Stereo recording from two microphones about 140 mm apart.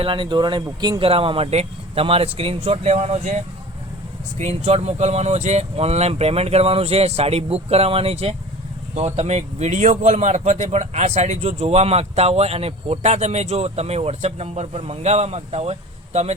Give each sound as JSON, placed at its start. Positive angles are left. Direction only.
{"t": 0.0, "sound": "a man's voice", "side_deg": -40}